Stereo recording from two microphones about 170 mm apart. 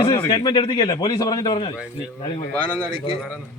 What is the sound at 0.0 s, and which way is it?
Speech, 20° left (ahead or behind).